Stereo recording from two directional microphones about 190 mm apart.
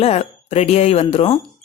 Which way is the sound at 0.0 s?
35° left (ahead or behind).